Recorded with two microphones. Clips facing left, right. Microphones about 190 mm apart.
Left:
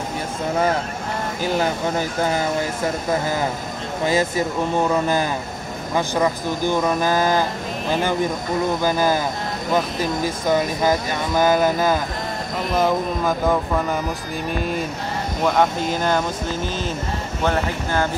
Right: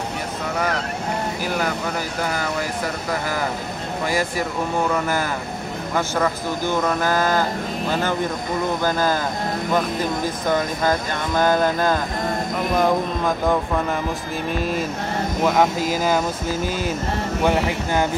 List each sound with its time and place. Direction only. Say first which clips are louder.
1.4 s speech: left 7 dB; 25° left (ahead or behind)
8.8 s speech: left 1 dB; 15° left (ahead or behind)
10.2 s speech: left 4 dB; 10° left (ahead or behind)
14.5 s speech: right 1 dB; centre (ahead or behind)